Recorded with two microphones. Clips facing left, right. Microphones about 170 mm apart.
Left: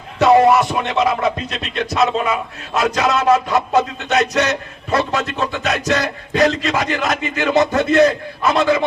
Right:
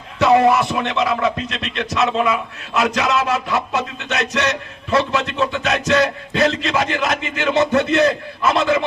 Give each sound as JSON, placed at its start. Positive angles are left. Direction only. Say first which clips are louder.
{"t": 0.2, "sound": "music", "louder": "left 2 dB", "side_deg": 35}